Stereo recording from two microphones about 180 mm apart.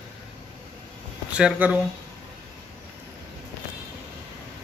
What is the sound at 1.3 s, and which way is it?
Speech, 5° right (ahead or behind).